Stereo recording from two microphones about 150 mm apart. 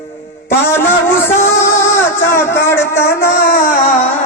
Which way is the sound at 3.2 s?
75° left (ahead or behind).